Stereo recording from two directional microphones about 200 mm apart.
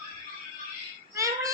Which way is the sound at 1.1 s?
15° right (ahead or behind).